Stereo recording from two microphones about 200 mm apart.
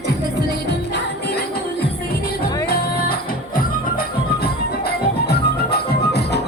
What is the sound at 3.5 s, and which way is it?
Music, 45° left (ahead or behind).